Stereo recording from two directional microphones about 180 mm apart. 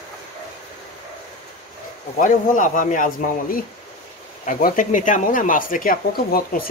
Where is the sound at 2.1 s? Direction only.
45° left (ahead or behind).